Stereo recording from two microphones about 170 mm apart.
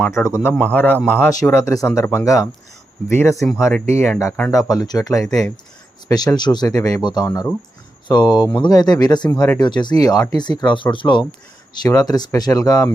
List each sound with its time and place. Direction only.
0.0 s a man's voice: 15° left (ahead or behind)